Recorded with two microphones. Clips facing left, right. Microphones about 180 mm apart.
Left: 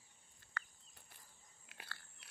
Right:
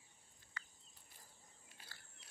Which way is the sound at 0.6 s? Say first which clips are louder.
Left 6 dB; 55° left (ahead or behind).